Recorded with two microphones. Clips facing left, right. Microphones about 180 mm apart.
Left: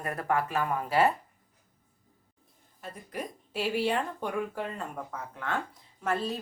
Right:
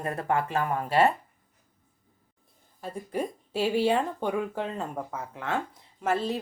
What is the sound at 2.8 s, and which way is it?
Speech, 30° right (ahead or behind).